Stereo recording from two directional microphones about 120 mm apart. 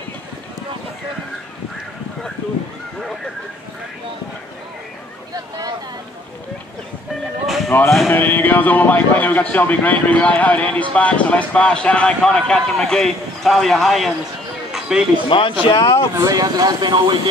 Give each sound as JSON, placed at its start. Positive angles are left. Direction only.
{"t": 5.3, "sound": "boat", "side_deg": -35}
{"t": 7.4, "sound": "a sound", "side_deg": 0}
{"t": 8.1, "sound": "speech", "side_deg": 15}
{"t": 14.7, "sound": "a sound", "side_deg": -5}
{"t": 15.2, "sound": "speech", "side_deg": 45}
{"t": 16.2, "sound": "speech", "side_deg": -30}